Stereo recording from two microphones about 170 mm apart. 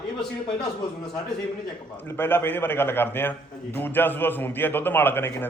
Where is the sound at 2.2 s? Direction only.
10° left (ahead or behind).